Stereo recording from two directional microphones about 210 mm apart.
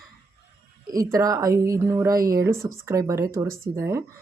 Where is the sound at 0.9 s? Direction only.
15° right (ahead or behind).